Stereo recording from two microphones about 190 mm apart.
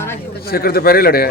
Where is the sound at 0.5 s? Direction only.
50° left (ahead or behind).